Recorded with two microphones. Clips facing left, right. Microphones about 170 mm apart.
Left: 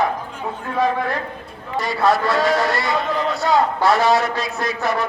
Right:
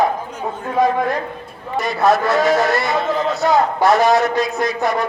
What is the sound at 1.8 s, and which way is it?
A man's voice, 20° right (ahead or behind).